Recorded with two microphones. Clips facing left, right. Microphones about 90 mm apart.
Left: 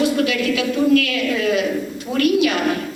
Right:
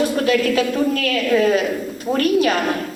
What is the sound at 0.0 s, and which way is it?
A woman's voice, 40° right (ahead or behind).